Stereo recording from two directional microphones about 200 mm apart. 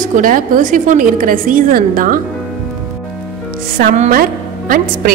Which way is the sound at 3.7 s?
40° right (ahead or behind).